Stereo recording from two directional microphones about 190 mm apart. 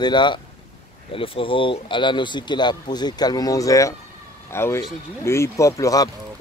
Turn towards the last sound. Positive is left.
turn(degrees=20)  # may be behind; listen again after turning